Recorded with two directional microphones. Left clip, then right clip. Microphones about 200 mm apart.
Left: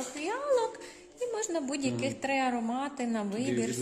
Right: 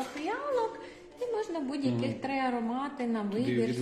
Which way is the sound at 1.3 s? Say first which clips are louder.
Left 1 dB; 60° left (ahead or behind).